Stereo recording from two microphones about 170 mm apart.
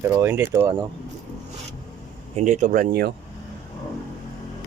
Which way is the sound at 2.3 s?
45° right (ahead or behind).